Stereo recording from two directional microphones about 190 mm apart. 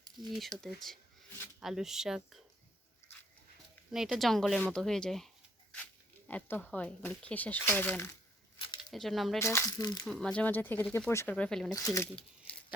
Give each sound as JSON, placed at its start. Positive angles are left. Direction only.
{"t": 0.3, "sound": "speech", "side_deg": 0}
{"t": 3.9, "sound": "speech", "side_deg": 0}
{"t": 8.5, "sound": "a sound", "side_deg": 30}
{"t": 8.8, "sound": "speech", "side_deg": 0}
{"t": 9.4, "sound": "speech", "side_deg": 15}
{"t": 10.1, "sound": "speech", "side_deg": 5}
{"t": 11.7, "sound": "speech", "side_deg": 15}